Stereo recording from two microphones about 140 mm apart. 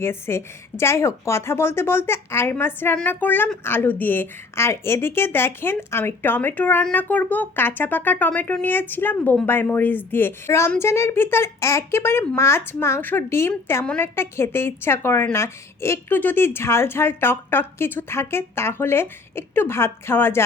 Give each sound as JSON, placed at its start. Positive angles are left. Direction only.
{"t": 0.0, "sound": "a woman's voice", "side_deg": 15}